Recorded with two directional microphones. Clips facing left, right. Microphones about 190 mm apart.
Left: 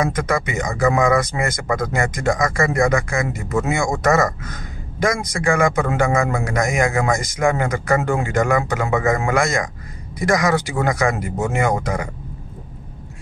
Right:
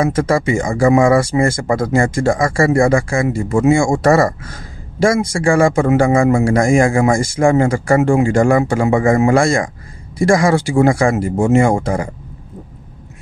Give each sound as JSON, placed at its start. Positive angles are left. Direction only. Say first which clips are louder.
{"t": 0.0, "sound": "a man's voice", "louder": "right 5 dB", "side_deg": -30}